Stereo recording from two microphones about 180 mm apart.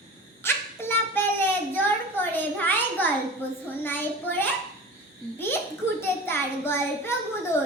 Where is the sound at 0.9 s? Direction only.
10° left (ahead or behind).